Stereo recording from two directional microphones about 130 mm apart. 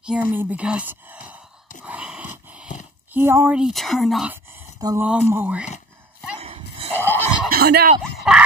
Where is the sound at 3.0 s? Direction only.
15° right (ahead or behind).